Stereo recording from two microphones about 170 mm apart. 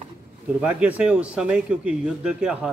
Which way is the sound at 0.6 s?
5° right (ahead or behind).